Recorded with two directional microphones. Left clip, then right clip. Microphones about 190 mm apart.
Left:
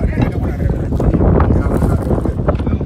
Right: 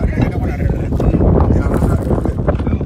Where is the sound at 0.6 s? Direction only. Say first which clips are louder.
Left 1 dB; 10° left (ahead or behind).